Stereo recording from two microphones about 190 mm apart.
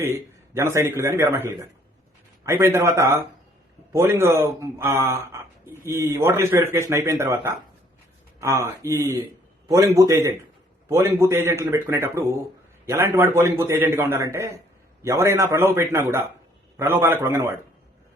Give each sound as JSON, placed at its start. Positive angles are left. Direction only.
{"t": 0.0, "sound": "a man's voice", "side_deg": -15}